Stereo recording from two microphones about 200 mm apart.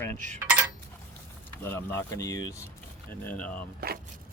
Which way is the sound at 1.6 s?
10° left (ahead or behind).